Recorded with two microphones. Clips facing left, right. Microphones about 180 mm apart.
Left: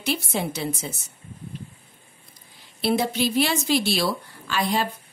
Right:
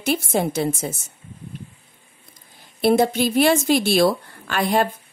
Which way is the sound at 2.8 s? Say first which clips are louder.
Right 6 dB; 50° right (ahead or behind).